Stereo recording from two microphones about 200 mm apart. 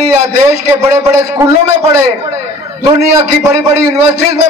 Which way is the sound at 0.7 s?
15° right (ahead or behind).